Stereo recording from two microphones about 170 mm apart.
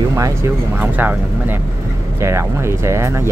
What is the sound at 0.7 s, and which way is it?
Speech, 10° right (ahead or behind).